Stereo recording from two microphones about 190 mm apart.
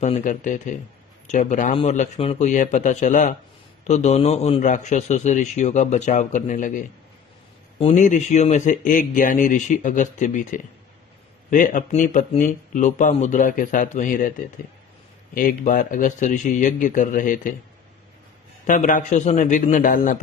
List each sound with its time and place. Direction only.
0.0 s a man's voice: 40° left (ahead or behind)
15.3 s speech: 45° left (ahead or behind)
18.7 s speech: 45° left (ahead or behind)